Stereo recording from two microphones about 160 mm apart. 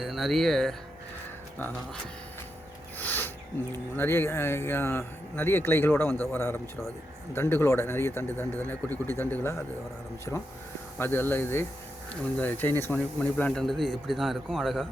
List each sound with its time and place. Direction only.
0.0 s a man's voice: centre (ahead or behind)
3.0 s a sound: 10° left (ahead or behind)
3.9 s speech: 15° left (ahead or behind)
10.9 s a man's voice: 15° left (ahead or behind)